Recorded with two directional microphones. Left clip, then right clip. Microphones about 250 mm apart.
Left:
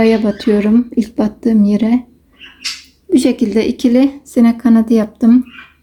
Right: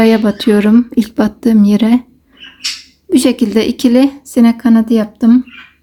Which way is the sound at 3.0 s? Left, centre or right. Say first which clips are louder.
Right 1 dB; centre.